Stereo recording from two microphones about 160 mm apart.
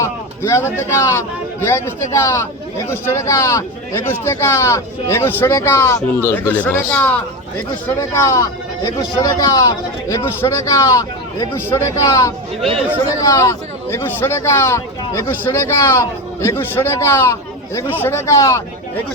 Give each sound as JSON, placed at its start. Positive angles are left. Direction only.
{"t": 0.0, "sound": "speech", "side_deg": 20}